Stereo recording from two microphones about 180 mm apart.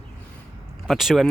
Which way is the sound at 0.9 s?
Centre (ahead or behind).